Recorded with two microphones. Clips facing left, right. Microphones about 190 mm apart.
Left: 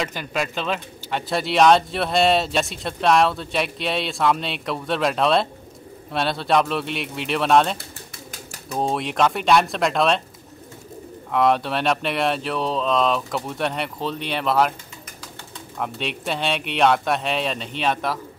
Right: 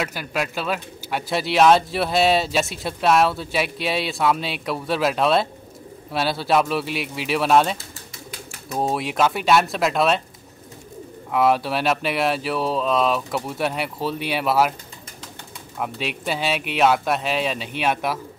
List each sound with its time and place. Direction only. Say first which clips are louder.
0.0 s speech: even; 5° right (ahead or behind)
8.3 s a sound: right 2 dB; 40° left (ahead or behind)
8.7 s speech: even; 5° right (ahead or behind)
11.3 s speech: even; 5° right (ahead or behind)
15.8 s speech: even; 5° right (ahead or behind)